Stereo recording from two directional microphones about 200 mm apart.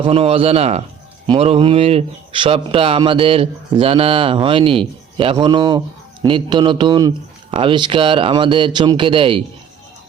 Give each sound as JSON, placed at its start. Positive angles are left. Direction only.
{"t": 0.0, "sound": "speech", "side_deg": -30}